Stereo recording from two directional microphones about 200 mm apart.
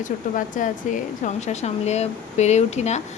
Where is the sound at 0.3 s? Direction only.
40° left (ahead or behind).